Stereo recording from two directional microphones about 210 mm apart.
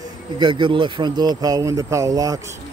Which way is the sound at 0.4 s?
20° right (ahead or behind).